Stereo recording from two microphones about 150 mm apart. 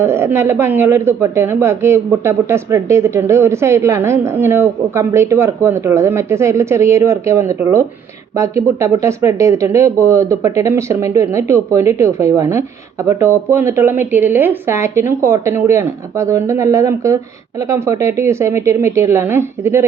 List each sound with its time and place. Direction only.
0.0 s a woman's voice: 15° right (ahead or behind)